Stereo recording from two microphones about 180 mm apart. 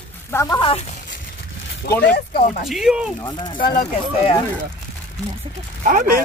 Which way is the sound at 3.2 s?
25° left (ahead or behind).